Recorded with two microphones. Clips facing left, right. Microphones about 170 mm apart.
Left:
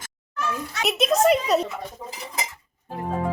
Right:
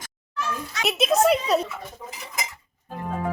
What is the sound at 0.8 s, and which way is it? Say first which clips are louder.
Speech: even; centre (ahead or behind).